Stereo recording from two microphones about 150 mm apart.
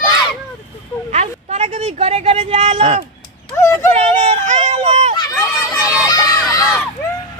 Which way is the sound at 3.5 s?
20° left (ahead or behind).